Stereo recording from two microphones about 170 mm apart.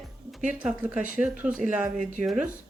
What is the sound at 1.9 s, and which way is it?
Speech, 50° right (ahead or behind).